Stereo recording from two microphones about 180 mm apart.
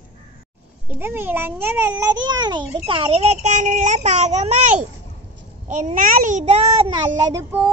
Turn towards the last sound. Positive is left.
turn(degrees=-15)  # may be behind; listen again after turning